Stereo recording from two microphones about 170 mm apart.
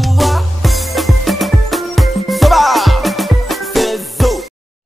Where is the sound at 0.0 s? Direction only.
Centre (ahead or behind).